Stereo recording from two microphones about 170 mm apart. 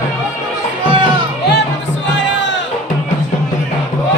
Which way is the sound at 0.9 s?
30° right (ahead or behind).